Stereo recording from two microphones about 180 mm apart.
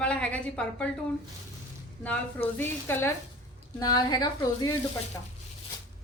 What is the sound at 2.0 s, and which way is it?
A woman's voice, 10° left (ahead or behind).